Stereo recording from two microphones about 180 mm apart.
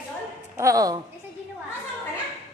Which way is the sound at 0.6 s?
20° right (ahead or behind).